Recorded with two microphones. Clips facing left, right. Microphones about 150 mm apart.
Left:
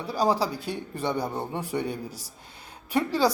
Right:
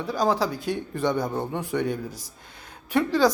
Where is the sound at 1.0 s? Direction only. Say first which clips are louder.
Right 3 dB; 10° left (ahead or behind).